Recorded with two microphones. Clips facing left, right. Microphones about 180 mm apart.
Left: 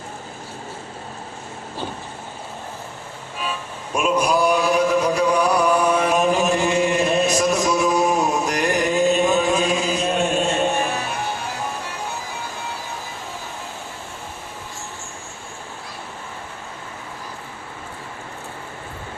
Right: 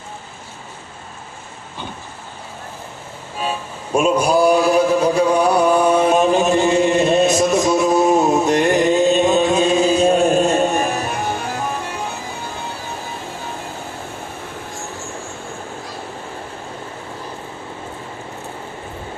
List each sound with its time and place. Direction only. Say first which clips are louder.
3.9 s mantra: right 4 dB; 30° right (ahead or behind)